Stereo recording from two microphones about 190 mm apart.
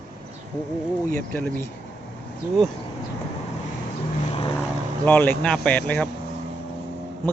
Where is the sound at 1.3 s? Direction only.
5° left (ahead or behind).